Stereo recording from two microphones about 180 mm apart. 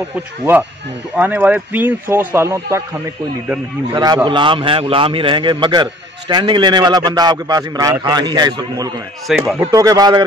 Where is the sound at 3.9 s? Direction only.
25° right (ahead or behind).